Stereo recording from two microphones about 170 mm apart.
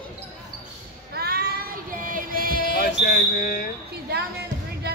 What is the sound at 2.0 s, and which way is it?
Music, 55° right (ahead or behind).